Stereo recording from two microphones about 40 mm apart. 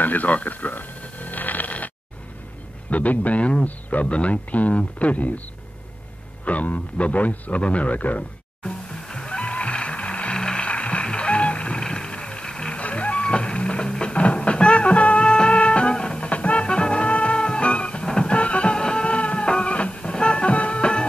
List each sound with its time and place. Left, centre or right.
0.0 s a sound: left
2.9 s a man's voice: left
6.4 s a man's voice: left
9.0 s music: centre
10.3 s music: centre
10.7 s music: left
11.8 s music: centre
12.7 s music: left
16.3 s music: left
19.0 s music: left